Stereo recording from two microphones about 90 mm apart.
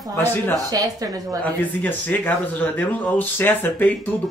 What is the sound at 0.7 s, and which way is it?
Speech, 40° right (ahead or behind).